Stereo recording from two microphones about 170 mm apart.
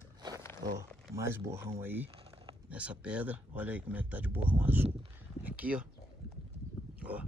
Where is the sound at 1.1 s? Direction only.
15° right (ahead or behind).